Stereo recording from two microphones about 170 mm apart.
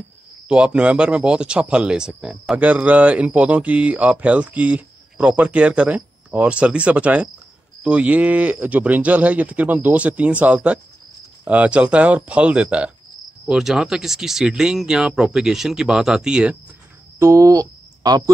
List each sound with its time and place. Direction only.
0.5 s speech: 5° right (ahead or behind)
17.2 s speech: 20° right (ahead or behind)